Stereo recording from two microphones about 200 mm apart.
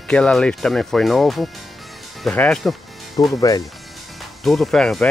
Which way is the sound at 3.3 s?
15° left (ahead or behind).